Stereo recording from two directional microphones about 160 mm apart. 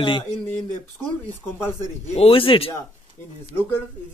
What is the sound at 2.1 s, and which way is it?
Speech, 35° left (ahead or behind).